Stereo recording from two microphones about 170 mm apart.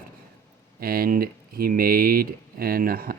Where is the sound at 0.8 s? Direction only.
60° right (ahead or behind).